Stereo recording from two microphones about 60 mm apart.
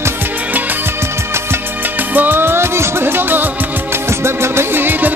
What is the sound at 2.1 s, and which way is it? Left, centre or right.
Music, right.